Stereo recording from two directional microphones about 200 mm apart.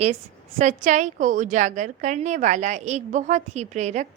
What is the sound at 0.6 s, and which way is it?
A woman's voice, 40° right (ahead or behind).